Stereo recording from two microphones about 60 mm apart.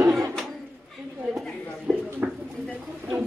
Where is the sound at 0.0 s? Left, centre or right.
Right.